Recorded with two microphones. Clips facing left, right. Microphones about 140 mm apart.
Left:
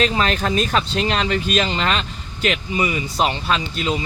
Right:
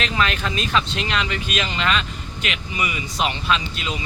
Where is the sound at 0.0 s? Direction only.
35° left (ahead or behind).